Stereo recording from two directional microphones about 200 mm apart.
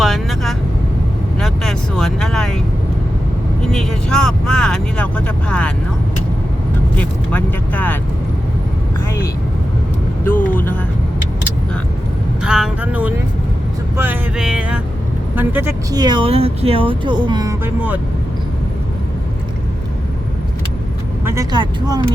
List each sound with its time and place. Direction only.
0.0 s vehicle: centre (ahead or behind)
3.6 s vehicle: centre (ahead or behind)
6.9 s vehicle: 5° left (ahead or behind)
10.5 s vehicle: 10° left (ahead or behind)
12.4 s vehicle: 5° right (ahead or behind)
15.4 s speech: 10° right (ahead or behind)
21.2 s vehicle: 20° right (ahead or behind)